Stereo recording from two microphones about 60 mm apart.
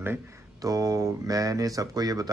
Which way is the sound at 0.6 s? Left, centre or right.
Right.